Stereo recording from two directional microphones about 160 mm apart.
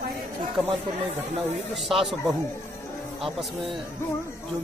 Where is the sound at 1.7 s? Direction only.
Centre (ahead or behind).